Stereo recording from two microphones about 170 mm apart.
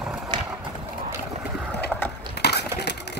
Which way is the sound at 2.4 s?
75° left (ahead or behind).